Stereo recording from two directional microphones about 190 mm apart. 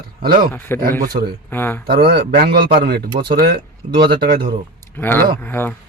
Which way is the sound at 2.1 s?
55° right (ahead or behind).